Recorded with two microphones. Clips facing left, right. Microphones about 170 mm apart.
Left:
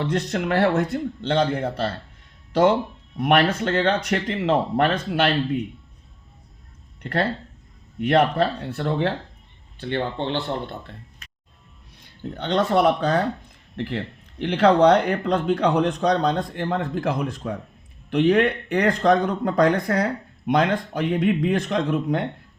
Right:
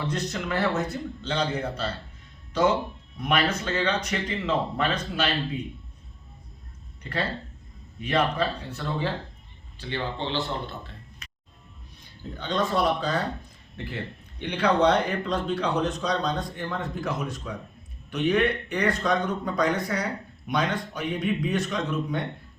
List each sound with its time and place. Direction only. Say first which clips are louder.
0.0 s a man's voice: left 6 dB; 65° left (ahead or behind)
3.2 s speech: left 6 dB; 65° left (ahead or behind)
7.0 s speech: left 6 dB; 55° left (ahead or behind)
12.4 s speech: left 6 dB; 70° left (ahead or behind)
13.7 s speech: left 6 dB; 85° left; by 20.1 s 60° left (ahead or behind)
20.6 s speech: left 5 dB; 75° left (ahead or behind)